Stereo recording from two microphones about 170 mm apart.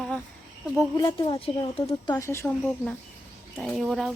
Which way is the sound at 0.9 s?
30° left (ahead or behind).